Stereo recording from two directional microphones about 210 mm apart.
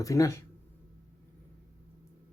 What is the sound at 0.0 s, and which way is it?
Speech, 15° left (ahead or behind).